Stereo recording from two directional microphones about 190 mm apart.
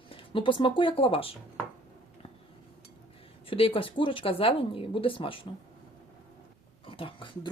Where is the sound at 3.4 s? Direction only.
30° left (ahead or behind).